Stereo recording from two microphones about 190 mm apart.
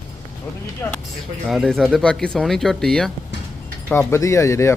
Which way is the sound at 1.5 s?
Centre (ahead or behind).